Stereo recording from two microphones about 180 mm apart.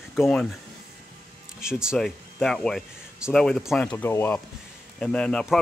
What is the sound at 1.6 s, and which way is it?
Speech, 5° right (ahead or behind).